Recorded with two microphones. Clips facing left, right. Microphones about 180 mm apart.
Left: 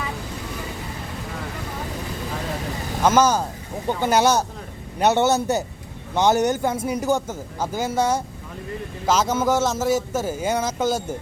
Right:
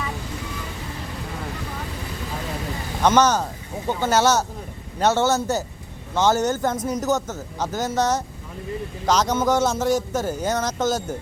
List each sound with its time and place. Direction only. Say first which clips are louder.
3.0 s speech: even; 5° left (ahead or behind)